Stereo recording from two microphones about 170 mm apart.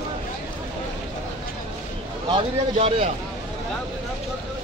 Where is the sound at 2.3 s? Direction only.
30° right (ahead or behind).